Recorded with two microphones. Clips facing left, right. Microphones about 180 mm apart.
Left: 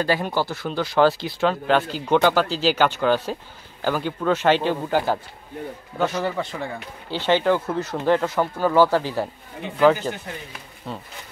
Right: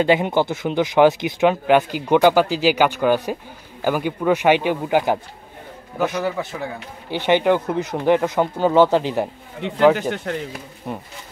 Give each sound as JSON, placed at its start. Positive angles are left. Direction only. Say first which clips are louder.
{"t": 0.0, "sound": "speech", "louder": "right 5 dB", "side_deg": -20}
{"t": 7.1, "sound": "speech", "louder": "right 3 dB", "side_deg": -15}
{"t": 9.6, "sound": "speech", "louder": "right 2 dB", "side_deg": -75}
{"t": 10.9, "sound": "speech", "louder": "right 3 dB", "side_deg": -15}